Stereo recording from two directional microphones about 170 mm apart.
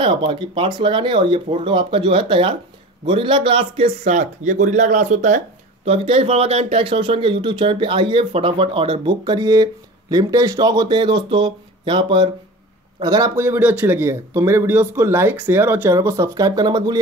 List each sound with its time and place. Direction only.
0.0 s speech: 30° right (ahead or behind)